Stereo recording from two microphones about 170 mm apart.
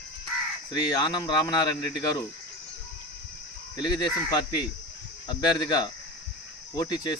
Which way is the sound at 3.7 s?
25° left (ahead or behind).